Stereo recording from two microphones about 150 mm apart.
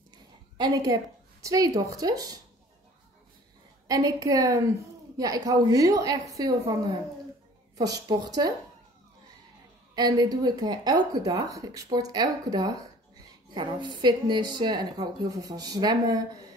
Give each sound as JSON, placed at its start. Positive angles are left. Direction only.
{"t": 0.6, "sound": "speech", "side_deg": -25}
{"t": 3.8, "sound": "speech", "side_deg": -25}
{"t": 9.9, "sound": "speech", "side_deg": -25}